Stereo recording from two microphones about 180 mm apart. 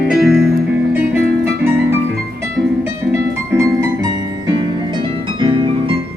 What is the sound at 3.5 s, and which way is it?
Music, 20° right (ahead or behind).